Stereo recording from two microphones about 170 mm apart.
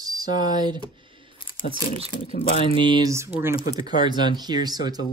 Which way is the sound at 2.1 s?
55° left (ahead or behind).